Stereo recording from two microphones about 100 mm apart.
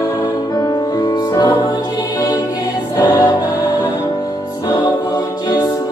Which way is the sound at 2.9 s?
40° left (ahead or behind).